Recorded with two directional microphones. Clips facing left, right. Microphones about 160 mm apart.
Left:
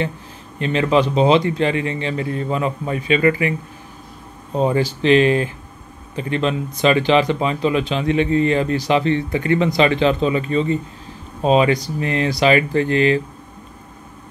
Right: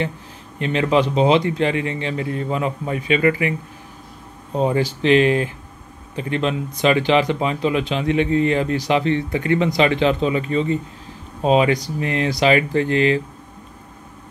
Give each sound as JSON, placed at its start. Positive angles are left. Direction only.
{"t": 0.6, "sound": "speech", "side_deg": -15}
{"t": 4.6, "sound": "speech", "side_deg": -15}